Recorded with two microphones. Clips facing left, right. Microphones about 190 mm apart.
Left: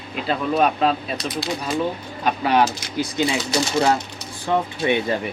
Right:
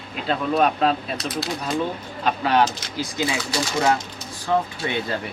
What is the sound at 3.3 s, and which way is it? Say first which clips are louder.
Speech: left 3 dB; 25° left (ahead or behind).